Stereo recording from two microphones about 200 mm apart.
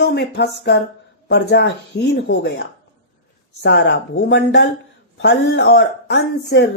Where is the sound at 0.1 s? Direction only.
55° left (ahead or behind).